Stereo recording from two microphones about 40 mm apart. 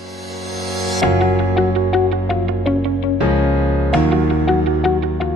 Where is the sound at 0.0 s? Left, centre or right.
Centre.